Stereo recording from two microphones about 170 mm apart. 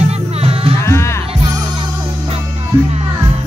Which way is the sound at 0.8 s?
15° left (ahead or behind).